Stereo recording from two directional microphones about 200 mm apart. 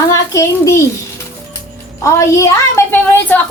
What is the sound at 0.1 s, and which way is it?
Speech, 15° left (ahead or behind).